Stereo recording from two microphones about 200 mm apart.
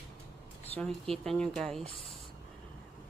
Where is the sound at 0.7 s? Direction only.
5° left (ahead or behind).